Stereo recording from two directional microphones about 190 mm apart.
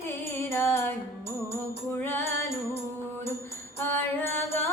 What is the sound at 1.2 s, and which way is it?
Music, 35° right (ahead or behind).